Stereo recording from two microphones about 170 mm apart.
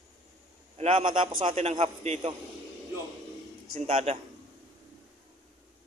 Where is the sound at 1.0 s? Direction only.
30° right (ahead or behind).